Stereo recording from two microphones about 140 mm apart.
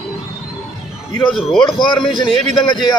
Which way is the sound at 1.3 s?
5° left (ahead or behind).